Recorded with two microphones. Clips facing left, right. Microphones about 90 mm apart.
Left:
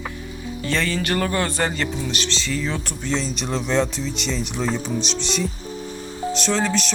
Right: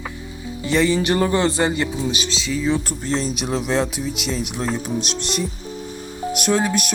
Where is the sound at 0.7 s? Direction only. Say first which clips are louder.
Right 5 dB; 15° right (ahead or behind).